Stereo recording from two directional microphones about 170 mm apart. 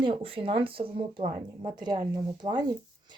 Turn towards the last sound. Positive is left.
turn(degrees=-25)  # may be behind; listen again after turning